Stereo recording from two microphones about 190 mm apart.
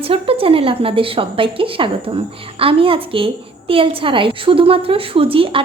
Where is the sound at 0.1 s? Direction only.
30° right (ahead or behind).